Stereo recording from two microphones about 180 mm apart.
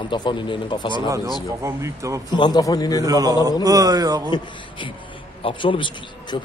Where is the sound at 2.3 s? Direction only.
25° left (ahead or behind).